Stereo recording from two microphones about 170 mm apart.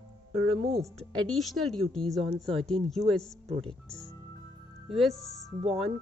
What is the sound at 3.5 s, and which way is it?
Speech, 35° right (ahead or behind).